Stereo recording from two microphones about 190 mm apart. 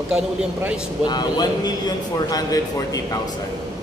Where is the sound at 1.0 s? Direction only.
20° left (ahead or behind).